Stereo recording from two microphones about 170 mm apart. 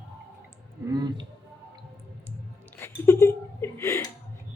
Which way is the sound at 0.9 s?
25° right (ahead or behind).